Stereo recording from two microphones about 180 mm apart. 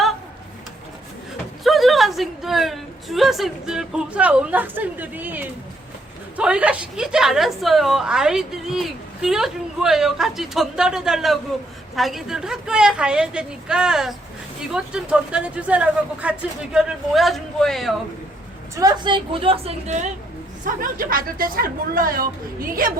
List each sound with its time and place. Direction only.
1.6 s a woman's voice: centre (ahead or behind)
18.8 s a woman's voice: 25° right (ahead or behind)
20.7 s speech: 50° right (ahead or behind)